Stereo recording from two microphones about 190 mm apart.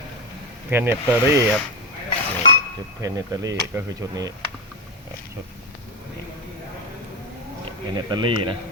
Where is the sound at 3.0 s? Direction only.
15° right (ahead or behind).